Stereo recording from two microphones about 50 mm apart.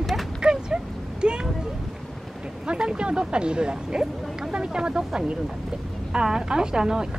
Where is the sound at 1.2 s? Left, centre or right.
Centre.